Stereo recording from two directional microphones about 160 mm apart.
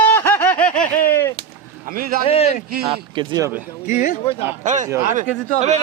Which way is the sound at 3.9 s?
50° left (ahead or behind).